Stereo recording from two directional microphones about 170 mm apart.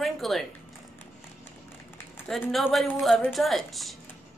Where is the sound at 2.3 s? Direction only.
Centre (ahead or behind).